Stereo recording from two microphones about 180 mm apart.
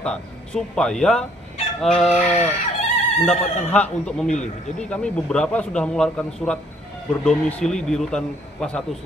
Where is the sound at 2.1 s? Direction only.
35° left (ahead or behind).